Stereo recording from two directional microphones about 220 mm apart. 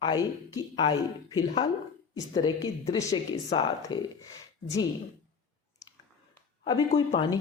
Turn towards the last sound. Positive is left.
turn(degrees=25)  # may be behind; listen again after turning